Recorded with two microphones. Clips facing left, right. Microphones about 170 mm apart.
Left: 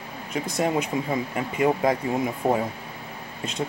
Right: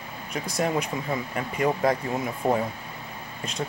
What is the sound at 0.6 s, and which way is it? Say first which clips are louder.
Speech: left 2 dB; 25° left (ahead or behind).